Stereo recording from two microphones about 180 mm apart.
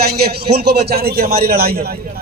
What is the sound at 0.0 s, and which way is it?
A man's voice, 60° right (ahead or behind).